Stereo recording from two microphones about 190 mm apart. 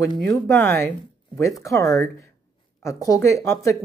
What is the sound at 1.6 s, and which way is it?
Speech, 15° left (ahead or behind).